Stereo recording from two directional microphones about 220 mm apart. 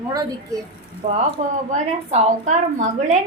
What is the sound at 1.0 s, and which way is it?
Speech, 30° right (ahead or behind).